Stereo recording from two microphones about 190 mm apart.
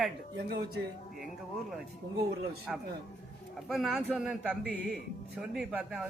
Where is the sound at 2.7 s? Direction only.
Centre (ahead or behind).